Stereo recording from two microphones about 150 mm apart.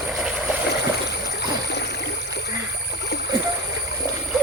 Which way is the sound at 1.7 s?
90° left.